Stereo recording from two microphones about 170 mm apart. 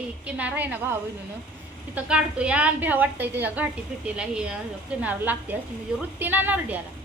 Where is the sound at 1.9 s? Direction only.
5° right (ahead or behind).